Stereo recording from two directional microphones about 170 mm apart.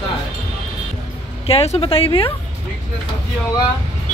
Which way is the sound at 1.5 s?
35° left (ahead or behind).